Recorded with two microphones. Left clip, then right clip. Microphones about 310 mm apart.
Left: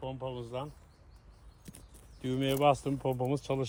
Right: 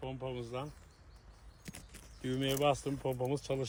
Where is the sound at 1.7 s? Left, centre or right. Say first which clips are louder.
Right 4 dB; centre.